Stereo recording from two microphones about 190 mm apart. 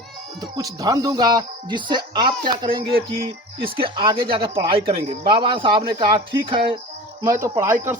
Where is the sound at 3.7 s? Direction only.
25° right (ahead or behind).